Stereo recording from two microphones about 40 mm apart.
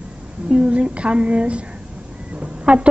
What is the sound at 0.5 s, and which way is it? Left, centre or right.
A woman's voice, right.